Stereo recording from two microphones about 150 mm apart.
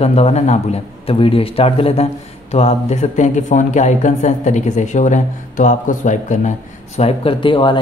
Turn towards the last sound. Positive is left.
turn(degrees=35)  # may be behind; listen again after turning